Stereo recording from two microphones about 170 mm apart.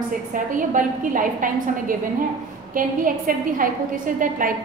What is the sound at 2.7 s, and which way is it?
A woman's voice, 55° right (ahead or behind).